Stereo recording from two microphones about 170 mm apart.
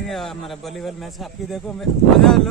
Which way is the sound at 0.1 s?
Centre (ahead or behind).